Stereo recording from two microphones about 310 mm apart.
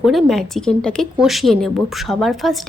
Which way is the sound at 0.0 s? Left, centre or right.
Centre.